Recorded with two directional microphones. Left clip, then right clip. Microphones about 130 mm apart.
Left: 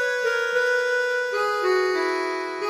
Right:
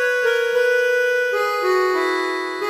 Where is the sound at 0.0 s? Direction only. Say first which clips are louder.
Right 5 dB; 25° left (ahead or behind).